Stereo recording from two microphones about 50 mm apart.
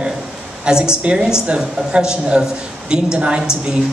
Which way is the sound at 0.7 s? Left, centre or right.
Centre.